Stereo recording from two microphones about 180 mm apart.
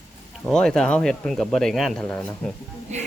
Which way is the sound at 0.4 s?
5° left (ahead or behind).